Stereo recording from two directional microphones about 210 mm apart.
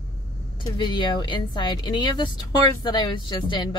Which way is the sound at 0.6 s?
20° left (ahead or behind).